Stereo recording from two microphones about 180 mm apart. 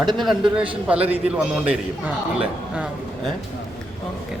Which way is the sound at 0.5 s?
5° right (ahead or behind).